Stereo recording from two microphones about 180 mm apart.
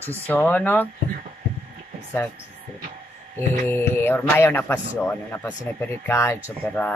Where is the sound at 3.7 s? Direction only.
10° left (ahead or behind).